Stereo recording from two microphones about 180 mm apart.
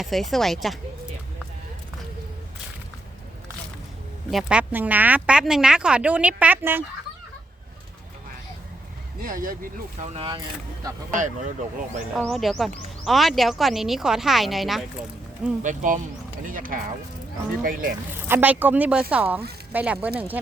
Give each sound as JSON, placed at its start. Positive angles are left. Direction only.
{"t": 0.0, "sound": "speech", "side_deg": 0}
{"t": 4.3, "sound": "speech", "side_deg": -5}
{"t": 9.2, "sound": "speech", "side_deg": -50}
{"t": 10.2, "sound": "speech", "side_deg": -25}
{"t": 11.1, "sound": "speech", "side_deg": -45}
{"t": 12.1, "sound": "speech", "side_deg": 0}
{"t": 15.6, "sound": "speech", "side_deg": -45}
{"t": 18.3, "sound": "speech", "side_deg": -10}